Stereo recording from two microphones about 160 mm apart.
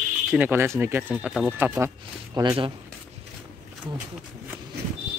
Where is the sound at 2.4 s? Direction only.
25° right (ahead or behind).